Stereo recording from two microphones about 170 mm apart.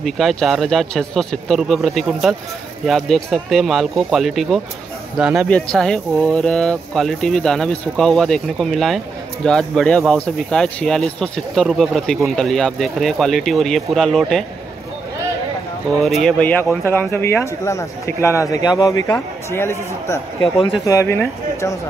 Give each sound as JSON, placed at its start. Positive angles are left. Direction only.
{"t": 0.0, "sound": "speech", "side_deg": 0}
{"t": 16.0, "sound": "speech", "side_deg": 0}